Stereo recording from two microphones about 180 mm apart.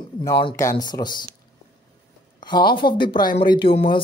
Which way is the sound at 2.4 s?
25° left (ahead or behind).